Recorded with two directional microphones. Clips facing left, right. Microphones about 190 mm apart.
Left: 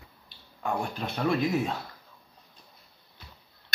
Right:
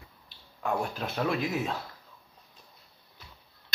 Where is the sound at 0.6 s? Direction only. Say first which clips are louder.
Even; centre (ahead or behind).